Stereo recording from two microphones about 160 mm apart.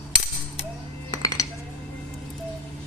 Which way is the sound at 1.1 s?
20° left (ahead or behind).